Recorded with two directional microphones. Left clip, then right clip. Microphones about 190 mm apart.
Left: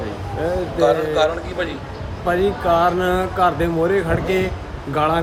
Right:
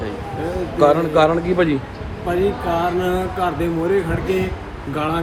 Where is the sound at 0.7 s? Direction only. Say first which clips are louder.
Right 3 dB; 25° right (ahead or behind).